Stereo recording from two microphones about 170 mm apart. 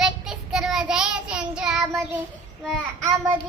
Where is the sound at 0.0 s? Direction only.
Centre (ahead or behind).